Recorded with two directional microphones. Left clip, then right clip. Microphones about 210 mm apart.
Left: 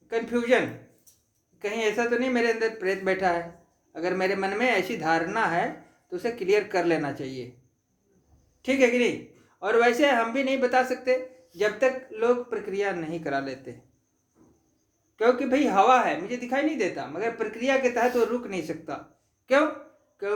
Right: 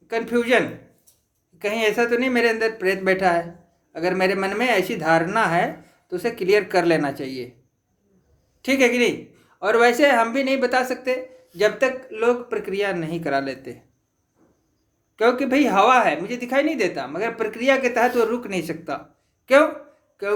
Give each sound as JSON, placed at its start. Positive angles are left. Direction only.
{"t": 0.1, "sound": "speech", "side_deg": -35}
{"t": 8.6, "sound": "speech", "side_deg": -30}
{"t": 15.1, "sound": "speech", "side_deg": -35}